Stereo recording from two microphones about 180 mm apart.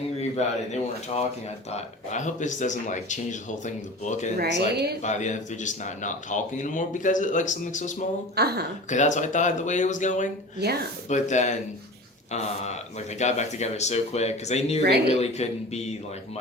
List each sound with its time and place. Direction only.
0.2 s speech: 35° left (ahead or behind)
4.7 s speech: 65° right (ahead or behind)
5.0 s speech: 40° left (ahead or behind)
8.4 s speech: 65° right (ahead or behind)
8.9 s speech: 40° left (ahead or behind)
10.6 s speech: 65° right (ahead or behind)
11.1 s speech: 40° left (ahead or behind)